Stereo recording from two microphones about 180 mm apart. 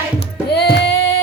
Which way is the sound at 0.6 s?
65° left (ahead or behind).